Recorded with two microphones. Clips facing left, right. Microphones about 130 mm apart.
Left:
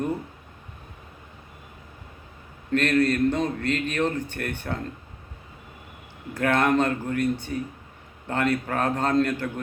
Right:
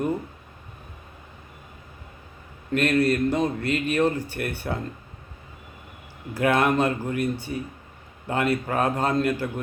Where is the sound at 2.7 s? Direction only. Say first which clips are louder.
Even; 10° right (ahead or behind).